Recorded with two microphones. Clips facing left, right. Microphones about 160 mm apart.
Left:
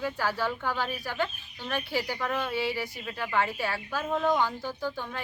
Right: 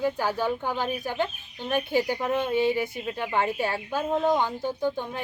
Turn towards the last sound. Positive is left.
turn(degrees=-20)  # may be behind; listen again after turning